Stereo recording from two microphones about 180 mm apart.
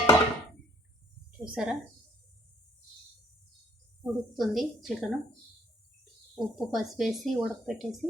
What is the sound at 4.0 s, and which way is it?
Speech, centre (ahead or behind).